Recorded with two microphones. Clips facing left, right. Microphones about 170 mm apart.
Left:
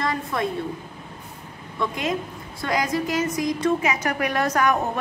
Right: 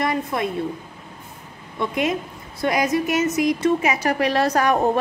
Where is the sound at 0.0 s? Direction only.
20° right (ahead or behind).